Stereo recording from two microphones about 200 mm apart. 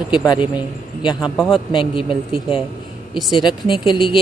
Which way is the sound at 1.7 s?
25° left (ahead or behind).